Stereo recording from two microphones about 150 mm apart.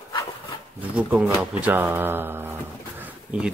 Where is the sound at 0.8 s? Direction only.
5° right (ahead or behind).